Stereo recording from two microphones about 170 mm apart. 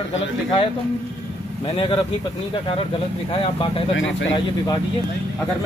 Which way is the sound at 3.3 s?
30° left (ahead or behind).